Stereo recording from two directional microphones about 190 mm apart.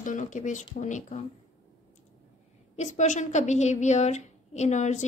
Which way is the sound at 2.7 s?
40° left (ahead or behind).